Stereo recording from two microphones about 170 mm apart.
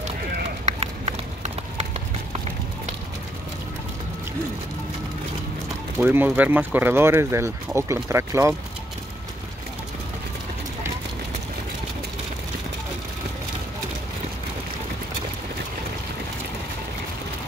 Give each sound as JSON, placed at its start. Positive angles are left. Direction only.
{"t": 0.7, "sound": "run", "side_deg": -40}
{"t": 5.9, "sound": "speech", "side_deg": -10}